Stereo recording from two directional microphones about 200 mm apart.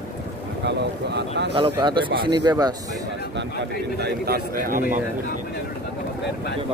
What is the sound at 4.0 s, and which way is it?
Speech, 50° right (ahead or behind).